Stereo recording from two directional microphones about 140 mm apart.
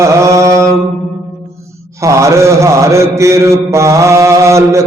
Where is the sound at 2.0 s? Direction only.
20° right (ahead or behind).